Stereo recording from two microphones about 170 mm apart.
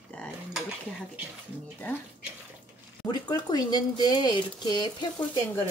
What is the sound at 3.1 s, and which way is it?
Speech, 25° left (ahead or behind).